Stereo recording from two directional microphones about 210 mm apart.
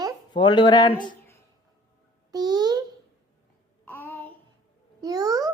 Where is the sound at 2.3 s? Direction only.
20° right (ahead or behind).